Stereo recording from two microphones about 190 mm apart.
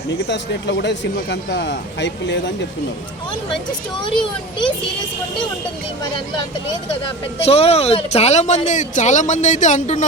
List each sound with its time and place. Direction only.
0.1 s speech: 65° left (ahead or behind)
7.4 s speech: 30° left (ahead or behind)